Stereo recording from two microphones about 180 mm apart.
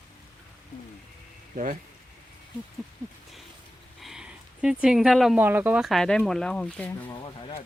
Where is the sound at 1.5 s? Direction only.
45° right (ahead or behind).